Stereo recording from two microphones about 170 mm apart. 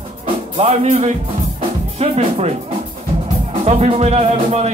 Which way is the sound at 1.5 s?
35° right (ahead or behind).